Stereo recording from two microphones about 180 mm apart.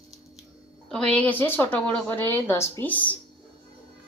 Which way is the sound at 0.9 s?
5° left (ahead or behind).